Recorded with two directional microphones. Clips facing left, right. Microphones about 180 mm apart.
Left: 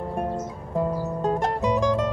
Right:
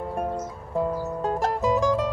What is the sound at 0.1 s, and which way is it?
Music, centre (ahead or behind).